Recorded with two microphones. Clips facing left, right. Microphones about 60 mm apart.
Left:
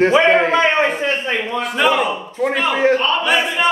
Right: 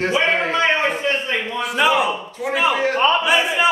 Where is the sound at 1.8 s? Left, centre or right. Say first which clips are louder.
Left 1 dB; centre.